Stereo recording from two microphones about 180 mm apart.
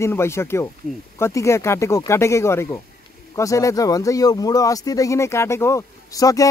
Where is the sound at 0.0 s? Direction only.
15° left (ahead or behind).